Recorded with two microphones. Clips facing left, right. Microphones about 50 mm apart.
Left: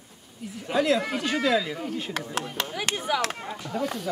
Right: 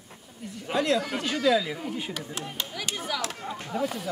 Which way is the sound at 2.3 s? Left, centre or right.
Left.